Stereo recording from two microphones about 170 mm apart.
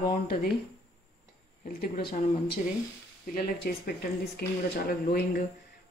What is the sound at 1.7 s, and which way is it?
Speech, 60° left (ahead or behind).